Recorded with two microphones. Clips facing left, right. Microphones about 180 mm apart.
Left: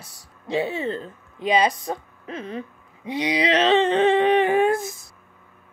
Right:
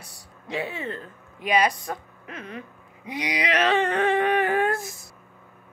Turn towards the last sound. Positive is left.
turn(degrees=20)  # may be behind; listen again after turning